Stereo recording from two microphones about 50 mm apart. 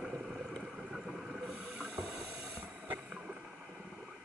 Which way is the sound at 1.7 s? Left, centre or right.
Centre.